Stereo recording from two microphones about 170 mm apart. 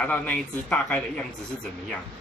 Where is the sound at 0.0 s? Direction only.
10° left (ahead or behind).